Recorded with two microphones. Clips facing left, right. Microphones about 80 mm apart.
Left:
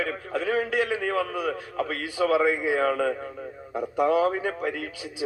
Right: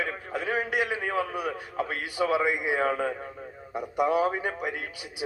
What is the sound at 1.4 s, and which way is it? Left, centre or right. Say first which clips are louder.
Speech: left 2 dB; right.